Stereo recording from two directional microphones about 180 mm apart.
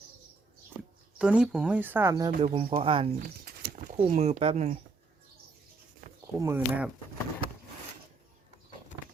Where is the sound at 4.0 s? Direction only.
35° right (ahead or behind).